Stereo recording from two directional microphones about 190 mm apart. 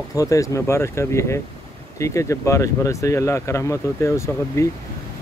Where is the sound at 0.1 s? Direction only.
15° left (ahead or behind).